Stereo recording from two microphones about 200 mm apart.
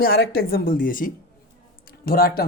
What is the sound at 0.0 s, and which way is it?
Speech, 50° left (ahead or behind).